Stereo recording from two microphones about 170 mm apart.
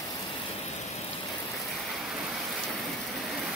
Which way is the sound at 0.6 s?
40° left (ahead or behind).